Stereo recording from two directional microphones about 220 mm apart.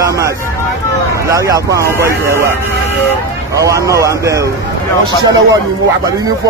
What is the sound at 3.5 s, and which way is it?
A man's voice, 15° right (ahead or behind).